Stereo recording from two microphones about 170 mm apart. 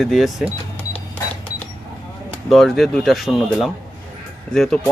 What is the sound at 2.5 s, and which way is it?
Speech, centre (ahead or behind).